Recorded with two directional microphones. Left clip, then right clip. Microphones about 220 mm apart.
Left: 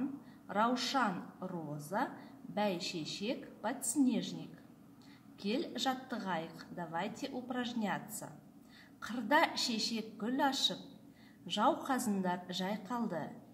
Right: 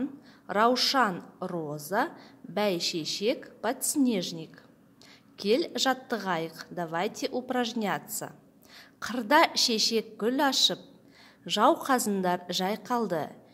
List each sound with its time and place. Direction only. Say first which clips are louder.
0.5 s a woman's voice: right 9 dB; 40° right (ahead or behind)